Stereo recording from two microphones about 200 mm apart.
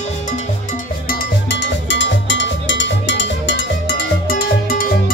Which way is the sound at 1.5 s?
60° left (ahead or behind).